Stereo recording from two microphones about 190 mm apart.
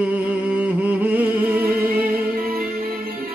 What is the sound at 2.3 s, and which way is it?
Music, 50° right (ahead or behind).